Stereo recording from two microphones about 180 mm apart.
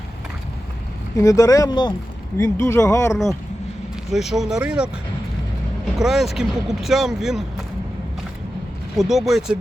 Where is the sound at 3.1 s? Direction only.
Centre (ahead or behind).